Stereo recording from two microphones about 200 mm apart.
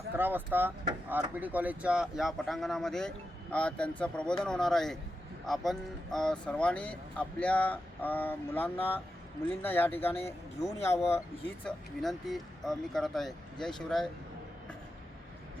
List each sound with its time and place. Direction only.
0.2 s speech: 10° right (ahead or behind); by 10.2 s 10° left (ahead or behind)
10.2 s speech: 30° left (ahead or behind)
11.6 s speech: centre (ahead or behind)